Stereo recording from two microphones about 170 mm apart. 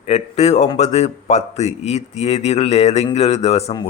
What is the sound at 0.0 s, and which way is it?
Speech, 40° left (ahead or behind).